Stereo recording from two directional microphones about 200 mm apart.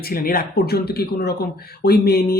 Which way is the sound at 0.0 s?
45° left (ahead or behind).